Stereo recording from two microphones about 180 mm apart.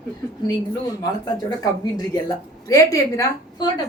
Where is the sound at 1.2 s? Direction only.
20° left (ahead or behind).